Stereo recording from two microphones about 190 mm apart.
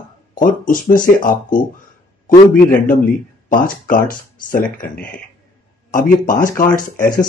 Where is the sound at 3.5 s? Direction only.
45° left (ahead or behind).